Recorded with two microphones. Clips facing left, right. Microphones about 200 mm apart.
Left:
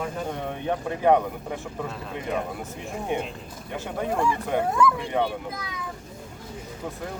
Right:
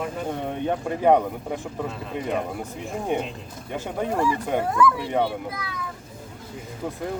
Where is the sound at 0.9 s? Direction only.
10° right (ahead or behind).